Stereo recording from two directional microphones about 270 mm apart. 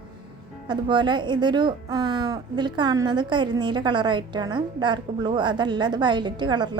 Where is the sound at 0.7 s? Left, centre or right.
Centre.